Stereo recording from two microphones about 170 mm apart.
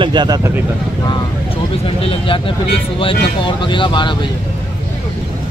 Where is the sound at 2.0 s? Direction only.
30° left (ahead or behind).